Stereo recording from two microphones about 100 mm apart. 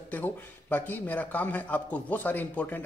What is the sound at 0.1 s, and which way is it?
A man's voice, 20° left (ahead or behind).